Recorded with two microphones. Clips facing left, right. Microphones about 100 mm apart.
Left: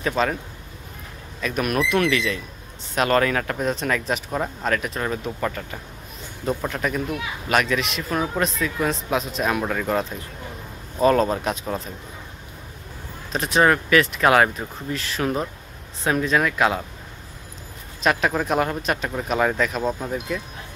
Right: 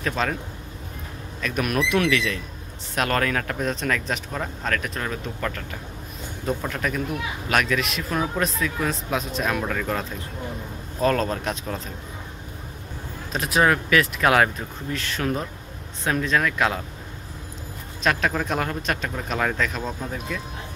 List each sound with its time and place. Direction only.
0.0 s speech: 5° left (ahead or behind)
1.4 s speech: centre (ahead or behind)
13.3 s speech: centre (ahead or behind)
18.0 s speech: 5° left (ahead or behind)